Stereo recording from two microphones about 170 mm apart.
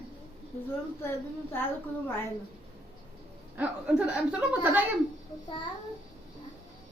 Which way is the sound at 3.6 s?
5° right (ahead or behind).